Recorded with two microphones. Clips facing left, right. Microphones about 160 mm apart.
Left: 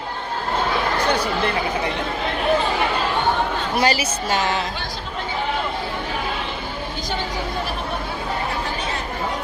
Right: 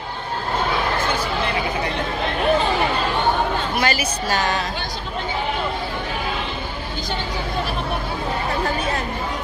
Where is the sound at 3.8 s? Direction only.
30° left (ahead or behind).